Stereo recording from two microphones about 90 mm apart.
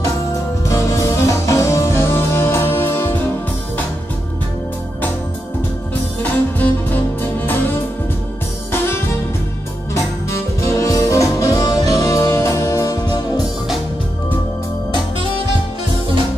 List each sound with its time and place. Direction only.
0.7 s music: 35° left (ahead or behind)
6.6 s music: 20° left (ahead or behind)
10.3 s music: 35° left (ahead or behind)